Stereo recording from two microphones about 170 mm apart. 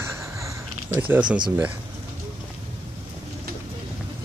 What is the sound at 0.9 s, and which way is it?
Speech, 10° right (ahead or behind).